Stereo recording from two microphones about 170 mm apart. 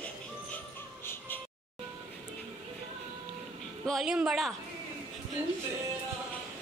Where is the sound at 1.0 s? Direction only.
15° left (ahead or behind).